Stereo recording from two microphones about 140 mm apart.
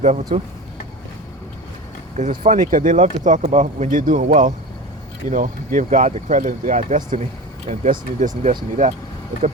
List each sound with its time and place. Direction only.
0.0 s speech: 55° right (ahead or behind)
2.1 s speech: 65° right (ahead or behind)